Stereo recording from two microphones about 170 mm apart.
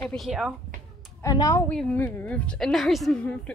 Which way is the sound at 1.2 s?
20° left (ahead or behind).